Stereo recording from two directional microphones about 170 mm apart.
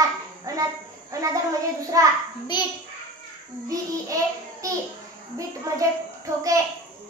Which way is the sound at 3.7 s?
20° right (ahead or behind).